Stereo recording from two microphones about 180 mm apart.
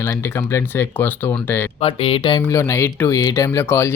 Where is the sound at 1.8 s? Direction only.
30° left (ahead or behind).